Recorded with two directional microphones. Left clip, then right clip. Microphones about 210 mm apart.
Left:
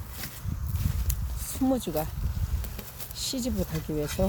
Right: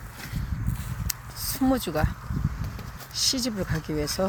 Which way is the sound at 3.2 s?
5° right (ahead or behind).